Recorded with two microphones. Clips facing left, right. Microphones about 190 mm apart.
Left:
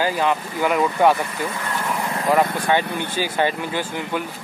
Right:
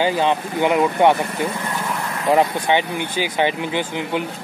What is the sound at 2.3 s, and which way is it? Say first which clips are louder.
Speech: right 2 dB; 20° right (ahead or behind).